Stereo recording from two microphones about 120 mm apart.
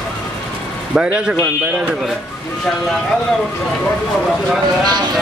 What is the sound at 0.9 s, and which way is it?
Speech, 10° right (ahead or behind).